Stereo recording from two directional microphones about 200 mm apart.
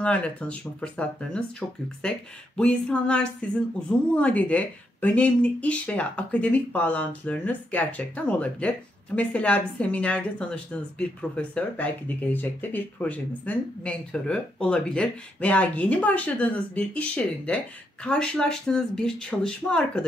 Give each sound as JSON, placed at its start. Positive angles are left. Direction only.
{"t": 0.0, "sound": "speech", "side_deg": 5}